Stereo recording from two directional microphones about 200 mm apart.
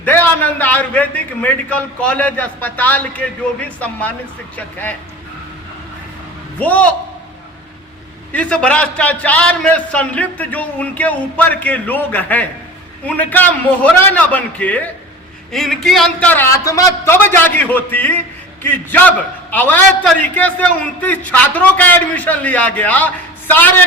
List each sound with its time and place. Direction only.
0.0 s a man's voice: 10° left (ahead or behind)
4.5 s a man's voice: 10° left (ahead or behind)
6.6 s a man's voice: 5° left (ahead or behind)
8.3 s a man's voice: 5° left (ahead or behind)